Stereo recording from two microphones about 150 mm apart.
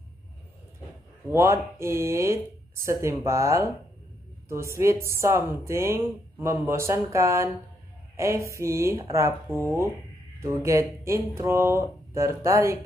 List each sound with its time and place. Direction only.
1.3 s speech: 20° right (ahead or behind)